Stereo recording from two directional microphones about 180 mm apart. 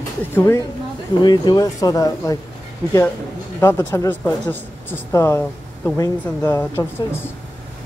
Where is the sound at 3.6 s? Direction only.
15° left (ahead or behind).